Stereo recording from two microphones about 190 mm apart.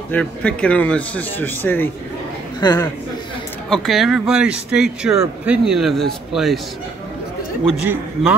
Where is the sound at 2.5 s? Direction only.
20° left (ahead or behind).